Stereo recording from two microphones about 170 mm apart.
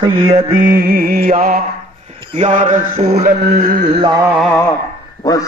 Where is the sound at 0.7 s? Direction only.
60° right (ahead or behind); by 3.3 s 45° right (ahead or behind).